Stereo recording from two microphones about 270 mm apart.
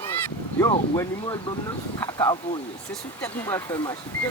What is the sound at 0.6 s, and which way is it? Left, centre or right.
Speech, centre.